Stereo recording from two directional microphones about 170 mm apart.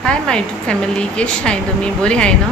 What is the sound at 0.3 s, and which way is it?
A woman's voice, 5° left (ahead or behind).